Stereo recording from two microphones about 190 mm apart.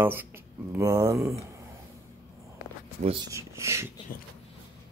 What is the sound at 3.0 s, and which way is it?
Speech, 30° right (ahead or behind).